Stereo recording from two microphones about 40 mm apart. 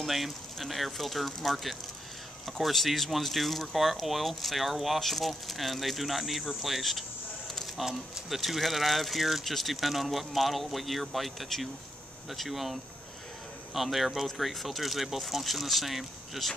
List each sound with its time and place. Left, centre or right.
0.0 s speech: centre
13.7 s speech: centre